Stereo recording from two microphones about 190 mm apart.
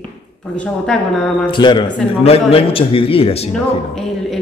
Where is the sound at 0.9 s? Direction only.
5° left (ahead or behind).